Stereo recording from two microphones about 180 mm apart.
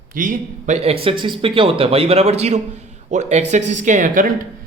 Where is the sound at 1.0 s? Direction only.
25° right (ahead or behind).